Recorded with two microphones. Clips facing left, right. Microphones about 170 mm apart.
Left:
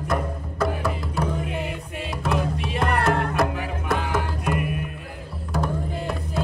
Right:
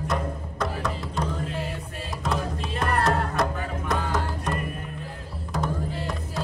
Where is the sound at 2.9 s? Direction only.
65° left (ahead or behind).